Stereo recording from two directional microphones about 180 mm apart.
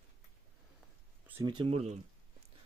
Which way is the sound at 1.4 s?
25° right (ahead or behind).